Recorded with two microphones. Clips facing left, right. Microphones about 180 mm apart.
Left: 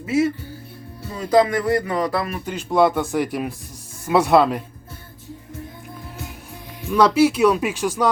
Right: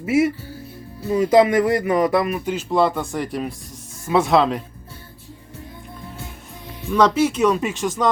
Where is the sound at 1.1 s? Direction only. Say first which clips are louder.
Right 3 dB; 25° right (ahead or behind).